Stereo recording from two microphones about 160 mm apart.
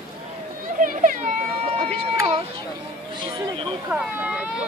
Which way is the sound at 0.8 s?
55° right (ahead or behind).